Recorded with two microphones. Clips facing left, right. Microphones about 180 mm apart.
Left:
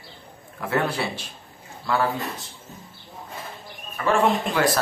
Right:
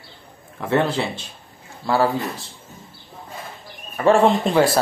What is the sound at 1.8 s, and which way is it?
Speech, 35° right (ahead or behind).